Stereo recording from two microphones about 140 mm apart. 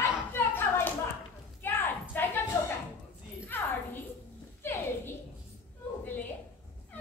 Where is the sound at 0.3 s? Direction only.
15° left (ahead or behind).